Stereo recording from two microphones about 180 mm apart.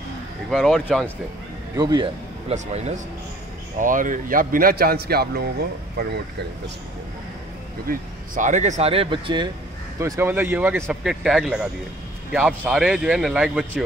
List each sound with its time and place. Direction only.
0.5 s speech: centre (ahead or behind)
1.8 s a man's voice: 25° right (ahead or behind)
2.5 s speech: 40° right (ahead or behind); by 6.2 s 60° right (ahead or behind)
7.9 s speech: 45° right (ahead or behind); by 9.5 s 25° right (ahead or behind)
9.9 s speech: 15° right (ahead or behind)